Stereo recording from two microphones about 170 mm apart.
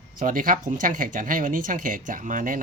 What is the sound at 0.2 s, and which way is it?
Speech, 55° right (ahead or behind).